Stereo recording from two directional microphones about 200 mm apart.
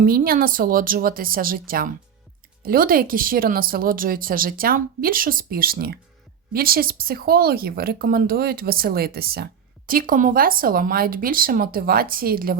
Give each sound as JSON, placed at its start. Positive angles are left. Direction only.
{"t": 0.0, "sound": "speech", "side_deg": -45}